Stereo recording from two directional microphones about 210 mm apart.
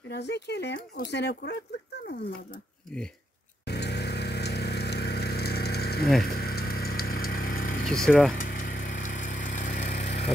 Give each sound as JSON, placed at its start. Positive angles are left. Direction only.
{"t": 0.1, "sound": "speech", "side_deg": 55}
{"t": 3.6, "sound": "vehicle", "side_deg": 50}
{"t": 6.2, "sound": "a sound", "side_deg": 45}
{"t": 7.9, "sound": "speech", "side_deg": 5}
{"t": 8.4, "sound": "vehicle", "side_deg": 40}